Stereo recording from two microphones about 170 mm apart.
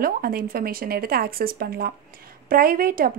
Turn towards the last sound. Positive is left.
turn(degrees=-60)  # may be behind; listen again after turning